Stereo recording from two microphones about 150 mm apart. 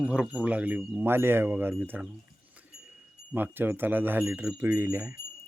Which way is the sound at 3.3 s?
15° right (ahead or behind).